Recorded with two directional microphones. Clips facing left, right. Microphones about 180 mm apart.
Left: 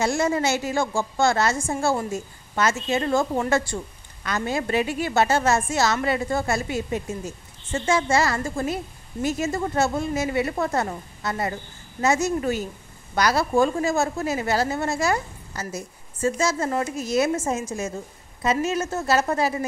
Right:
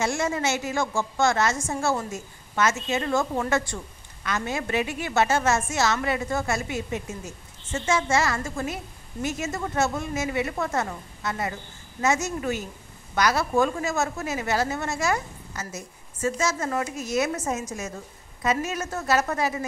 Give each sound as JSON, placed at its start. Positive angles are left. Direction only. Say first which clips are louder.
{"t": 0.0, "sound": "a woman's voice", "louder": "left 3 dB", "side_deg": 35}